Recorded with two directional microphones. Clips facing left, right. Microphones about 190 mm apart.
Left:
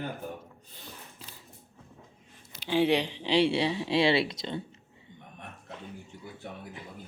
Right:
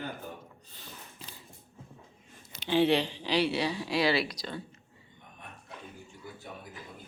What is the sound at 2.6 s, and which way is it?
Speech, 10° left (ahead or behind).